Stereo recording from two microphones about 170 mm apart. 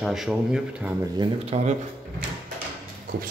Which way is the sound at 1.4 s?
40° right (ahead or behind).